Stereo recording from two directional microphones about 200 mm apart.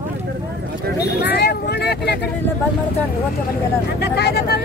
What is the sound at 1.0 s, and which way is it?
Speech, 55° left (ahead or behind).